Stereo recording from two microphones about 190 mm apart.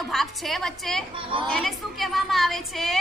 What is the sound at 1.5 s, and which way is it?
A woman's voice, centre (ahead or behind).